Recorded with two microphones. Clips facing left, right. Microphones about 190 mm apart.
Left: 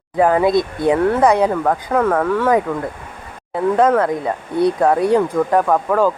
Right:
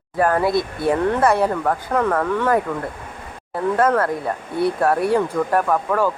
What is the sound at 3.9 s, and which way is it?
Speech, 15° left (ahead or behind).